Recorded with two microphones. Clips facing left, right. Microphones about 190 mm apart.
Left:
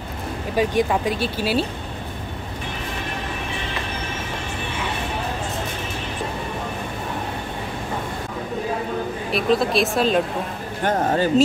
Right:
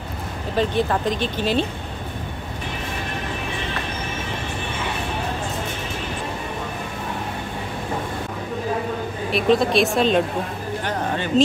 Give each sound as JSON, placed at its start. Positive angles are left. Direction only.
{"t": 0.6, "sound": "speech", "side_deg": 10}
{"t": 9.3, "sound": "speech", "side_deg": 0}
{"t": 10.8, "sound": "a sound", "side_deg": 45}